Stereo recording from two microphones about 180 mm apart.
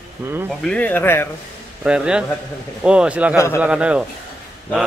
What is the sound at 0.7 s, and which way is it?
Speech, 10° left (ahead or behind).